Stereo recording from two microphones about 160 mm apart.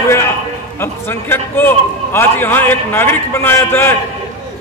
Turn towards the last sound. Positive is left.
turn(degrees=15)  # may be behind; listen again after turning